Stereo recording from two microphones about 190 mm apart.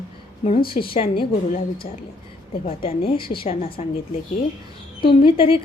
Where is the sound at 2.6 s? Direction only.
30° left (ahead or behind).